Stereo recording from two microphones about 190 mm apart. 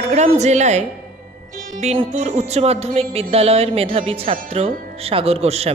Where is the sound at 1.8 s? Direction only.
35° right (ahead or behind).